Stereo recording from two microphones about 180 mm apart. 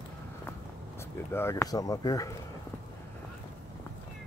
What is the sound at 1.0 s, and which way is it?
Speech, 15° left (ahead or behind).